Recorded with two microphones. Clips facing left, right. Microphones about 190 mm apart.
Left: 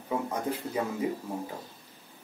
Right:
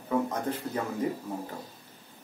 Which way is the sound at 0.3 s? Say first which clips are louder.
Even; 10° left (ahead or behind).